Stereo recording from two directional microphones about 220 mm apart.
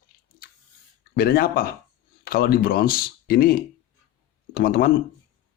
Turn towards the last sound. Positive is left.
turn(degrees=45)  # may be behind; listen again after turning